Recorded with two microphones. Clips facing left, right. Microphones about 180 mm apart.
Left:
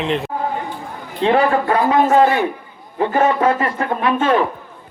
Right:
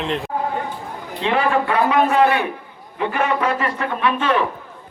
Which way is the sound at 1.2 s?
40° left (ahead or behind).